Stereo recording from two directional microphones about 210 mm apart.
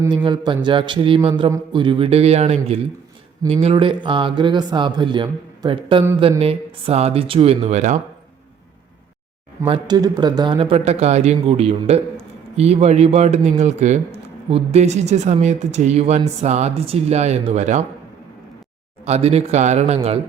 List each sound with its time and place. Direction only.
0.0 s speech: 20° right (ahead or behind)
9.6 s speech: 20° right (ahead or behind)
19.0 s speech: 30° right (ahead or behind)